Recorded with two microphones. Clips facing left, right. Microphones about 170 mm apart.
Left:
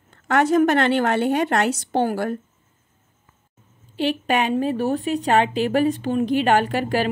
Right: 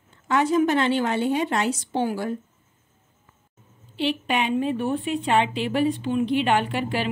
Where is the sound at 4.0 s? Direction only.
45° left (ahead or behind).